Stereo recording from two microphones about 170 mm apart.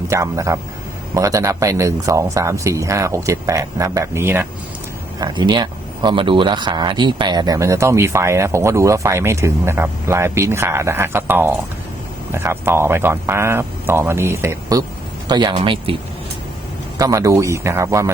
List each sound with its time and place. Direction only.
0.1 s a man's voice: 20° right (ahead or behind)
5.2 s a man's voice: 25° right (ahead or behind)
17.0 s a man's voice: 20° right (ahead or behind)